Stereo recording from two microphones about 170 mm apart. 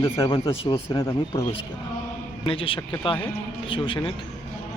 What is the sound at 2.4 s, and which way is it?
Speech, 30° left (ahead or behind).